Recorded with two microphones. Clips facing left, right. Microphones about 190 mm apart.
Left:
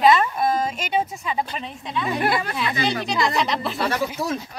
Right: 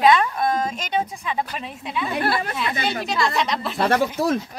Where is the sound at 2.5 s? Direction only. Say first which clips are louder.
Left 1 dB; centre (ahead or behind).